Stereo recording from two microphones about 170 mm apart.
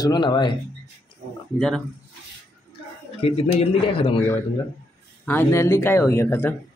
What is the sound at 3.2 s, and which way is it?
A man's voice, 35° left (ahead or behind).